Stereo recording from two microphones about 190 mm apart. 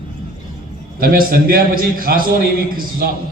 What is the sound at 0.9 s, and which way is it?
A man's voice, 50° right (ahead or behind).